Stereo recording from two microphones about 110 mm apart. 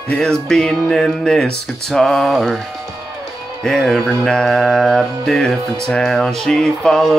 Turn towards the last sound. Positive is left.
turn(degrees=5)  # may be behind; listen again after turning